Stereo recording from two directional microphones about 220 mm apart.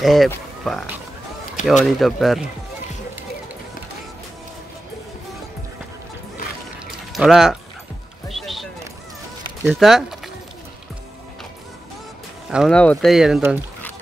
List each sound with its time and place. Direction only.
0.0 s speech: centre (ahead or behind)
1.6 s speech: 35° left (ahead or behind)
2.0 s speech: centre (ahead or behind)
7.1 s speech: centre (ahead or behind)
8.3 s a sound: centre (ahead or behind)
9.7 s speech: centre (ahead or behind)
12.4 s speech: centre (ahead or behind)